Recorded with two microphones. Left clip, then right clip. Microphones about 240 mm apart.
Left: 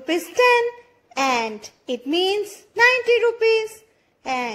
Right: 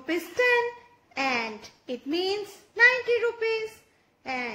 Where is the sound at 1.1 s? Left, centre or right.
Left.